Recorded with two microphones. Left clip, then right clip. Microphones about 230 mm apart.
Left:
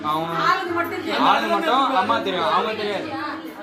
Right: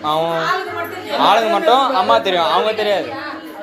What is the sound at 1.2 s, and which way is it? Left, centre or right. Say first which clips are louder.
Speech: right 6 dB; right.